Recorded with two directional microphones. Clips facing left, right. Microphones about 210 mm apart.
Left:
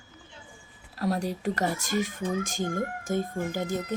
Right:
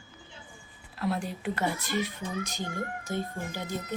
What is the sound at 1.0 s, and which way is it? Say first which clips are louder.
Speech: left 3 dB; 40° left (ahead or behind).